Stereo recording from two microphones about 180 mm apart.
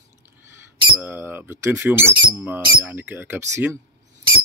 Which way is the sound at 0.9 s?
10° right (ahead or behind).